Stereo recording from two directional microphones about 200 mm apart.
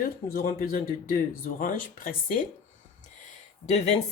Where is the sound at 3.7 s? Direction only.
30° left (ahead or behind).